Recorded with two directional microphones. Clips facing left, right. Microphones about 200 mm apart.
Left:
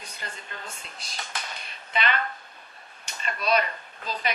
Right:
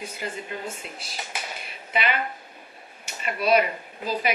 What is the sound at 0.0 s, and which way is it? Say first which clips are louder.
Speech: right 8 dB; 5° right (ahead or behind).